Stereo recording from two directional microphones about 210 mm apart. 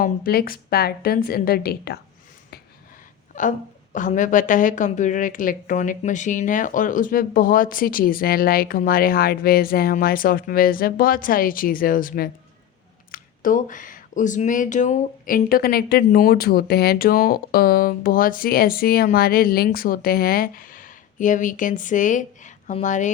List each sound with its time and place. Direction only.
0.0 s speech: 45° left (ahead or behind)
3.3 s a woman's voice: 35° left (ahead or behind)